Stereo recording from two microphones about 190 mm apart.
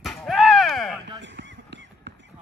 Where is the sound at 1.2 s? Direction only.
70° right (ahead or behind).